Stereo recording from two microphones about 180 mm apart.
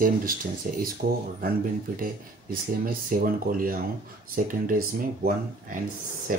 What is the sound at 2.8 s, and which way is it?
Speech, 50° right (ahead or behind).